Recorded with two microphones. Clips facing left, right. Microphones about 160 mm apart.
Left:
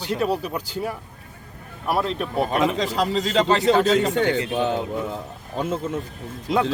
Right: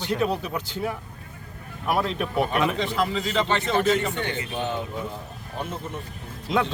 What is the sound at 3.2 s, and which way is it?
Speech, 90° left.